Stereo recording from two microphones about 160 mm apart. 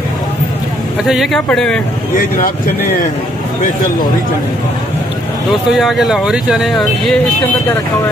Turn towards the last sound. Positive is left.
turn(degrees=0)  # may be behind; listen again after turning